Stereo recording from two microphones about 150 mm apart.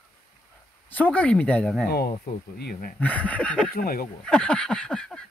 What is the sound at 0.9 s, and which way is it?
Speech, 10° left (ahead or behind).